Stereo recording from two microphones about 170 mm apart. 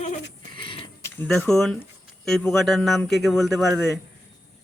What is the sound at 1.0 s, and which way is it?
A man's voice, 10° left (ahead or behind).